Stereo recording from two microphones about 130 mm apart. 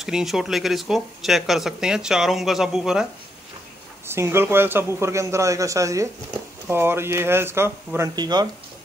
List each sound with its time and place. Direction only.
0.0 s speech: centre (ahead or behind)
4.1 s a man's voice: 20° right (ahead or behind)
8.2 s speech: 30° right (ahead or behind)